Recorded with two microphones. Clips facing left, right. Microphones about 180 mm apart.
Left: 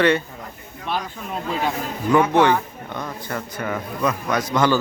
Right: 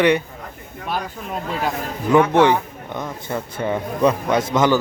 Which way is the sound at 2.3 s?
20° right (ahead or behind).